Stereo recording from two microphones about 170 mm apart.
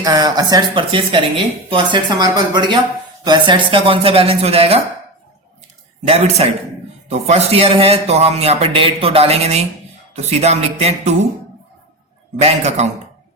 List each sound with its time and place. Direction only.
0.0 s a man's voice: 20° right (ahead or behind)
6.1 s a man's voice: 40° right (ahead or behind)
12.4 s a man's voice: 40° right (ahead or behind)